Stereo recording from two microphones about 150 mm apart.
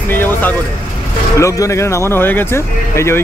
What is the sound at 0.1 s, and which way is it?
Speech, 15° left (ahead or behind).